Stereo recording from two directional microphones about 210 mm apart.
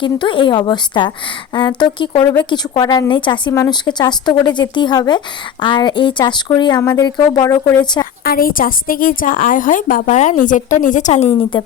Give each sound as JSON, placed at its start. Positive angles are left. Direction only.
{"t": 0.0, "sound": "a woman's voice", "side_deg": 25}
{"t": 8.2, "sound": "a woman's voice", "side_deg": 45}